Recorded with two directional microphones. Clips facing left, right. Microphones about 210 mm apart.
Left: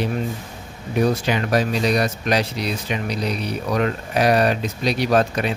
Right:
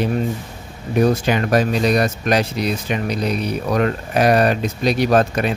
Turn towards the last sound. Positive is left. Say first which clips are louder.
# right 3 dB
turn(degrees=-50)  # may be behind; listen again after turning